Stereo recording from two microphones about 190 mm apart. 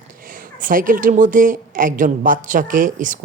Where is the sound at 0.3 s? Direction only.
45° right (ahead or behind).